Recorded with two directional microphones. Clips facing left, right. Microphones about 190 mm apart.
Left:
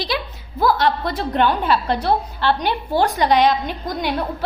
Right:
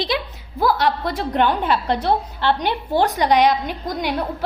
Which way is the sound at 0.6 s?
10° right (ahead or behind).